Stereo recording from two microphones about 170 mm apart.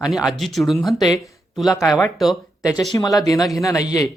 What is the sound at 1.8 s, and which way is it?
Speech, centre (ahead or behind).